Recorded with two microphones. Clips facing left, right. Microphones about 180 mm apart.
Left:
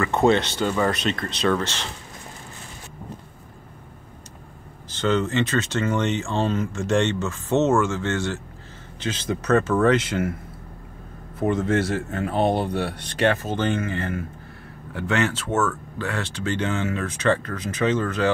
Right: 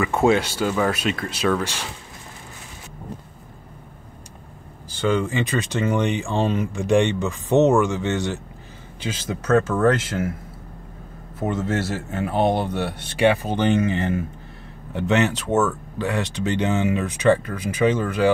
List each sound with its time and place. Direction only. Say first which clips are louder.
0.0 s speech: right 1 dB; 10° right (ahead or behind)
4.9 s speech: even; 10° right (ahead or behind)
11.3 s a man's voice: left 2 dB; 5° right (ahead or behind)